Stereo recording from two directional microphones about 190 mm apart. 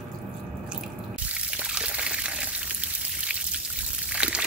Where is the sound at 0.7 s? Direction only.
5° right (ahead or behind).